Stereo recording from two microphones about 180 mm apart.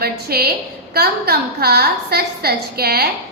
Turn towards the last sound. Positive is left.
turn(degrees=-60)  # may be behind; listen again after turning